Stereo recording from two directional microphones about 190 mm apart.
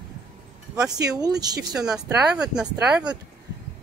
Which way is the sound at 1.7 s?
5° right (ahead or behind).